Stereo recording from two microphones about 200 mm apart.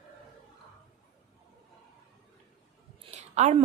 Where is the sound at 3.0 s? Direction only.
35° right (ahead or behind).